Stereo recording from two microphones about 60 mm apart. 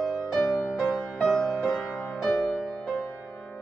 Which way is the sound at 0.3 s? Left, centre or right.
Centre.